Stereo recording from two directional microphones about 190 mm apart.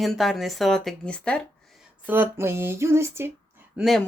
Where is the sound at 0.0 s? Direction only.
Centre (ahead or behind).